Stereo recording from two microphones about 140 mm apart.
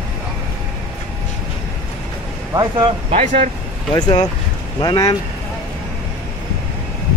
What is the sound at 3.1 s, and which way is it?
Speech, 65° right (ahead or behind).